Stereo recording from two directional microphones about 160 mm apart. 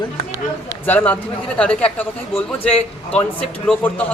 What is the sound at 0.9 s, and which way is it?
A man's voice, 10° left (ahead or behind).